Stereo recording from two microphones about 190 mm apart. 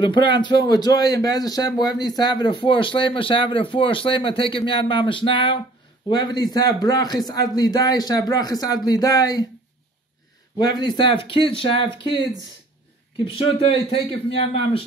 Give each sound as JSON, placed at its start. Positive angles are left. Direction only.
{"t": 0.0, "sound": "speech", "side_deg": 25}
{"t": 10.6, "sound": "speech", "side_deg": 20}
{"t": 13.2, "sound": "speech", "side_deg": 30}